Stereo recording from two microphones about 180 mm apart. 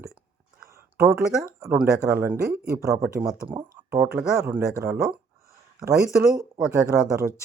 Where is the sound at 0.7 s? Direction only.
15° right (ahead or behind).